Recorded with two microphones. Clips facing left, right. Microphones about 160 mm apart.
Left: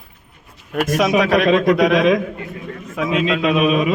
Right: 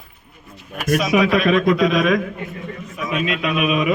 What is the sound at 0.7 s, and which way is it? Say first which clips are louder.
Speech: left 3 dB; 85° left.